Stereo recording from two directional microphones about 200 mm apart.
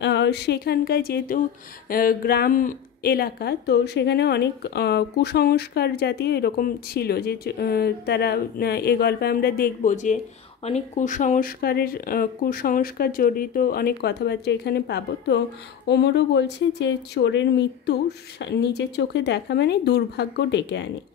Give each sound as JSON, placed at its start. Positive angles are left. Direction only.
{"t": 0.0, "sound": "speech", "side_deg": 60}